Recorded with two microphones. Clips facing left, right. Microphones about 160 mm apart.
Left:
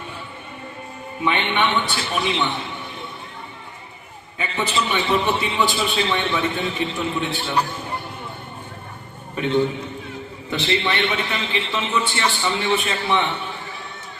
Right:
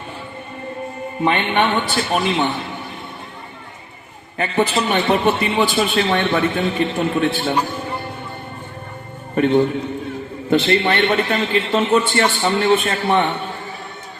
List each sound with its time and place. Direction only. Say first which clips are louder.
1.2 s a man's voice: right 4 dB; 45° right (ahead or behind)
4.4 s a man's voice: right 6 dB; 50° right (ahead or behind)
9.3 s a man's voice: right 5 dB; 50° right (ahead or behind)